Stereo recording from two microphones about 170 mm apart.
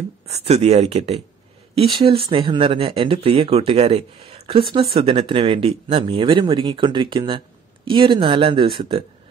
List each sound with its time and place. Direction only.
0.3 s speech: 40° right (ahead or behind)